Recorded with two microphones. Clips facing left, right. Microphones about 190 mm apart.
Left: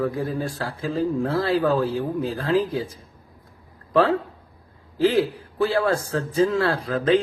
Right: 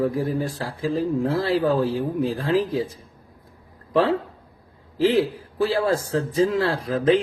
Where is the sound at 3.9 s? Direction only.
25° right (ahead or behind).